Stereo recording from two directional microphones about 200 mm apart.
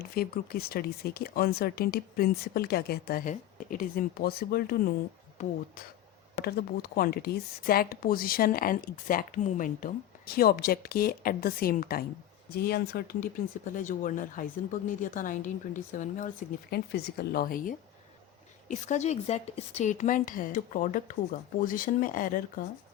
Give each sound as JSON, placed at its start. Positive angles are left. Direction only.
{"t": 0.0, "sound": "speech", "side_deg": 50}
{"t": 6.4, "sound": "speech", "side_deg": 50}
{"t": 13.7, "sound": "a woman's voice", "side_deg": 40}